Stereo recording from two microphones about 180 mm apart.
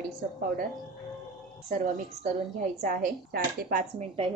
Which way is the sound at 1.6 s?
45° right (ahead or behind).